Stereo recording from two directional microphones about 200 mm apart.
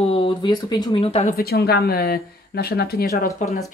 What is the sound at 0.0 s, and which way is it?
Speech, 25° left (ahead or behind).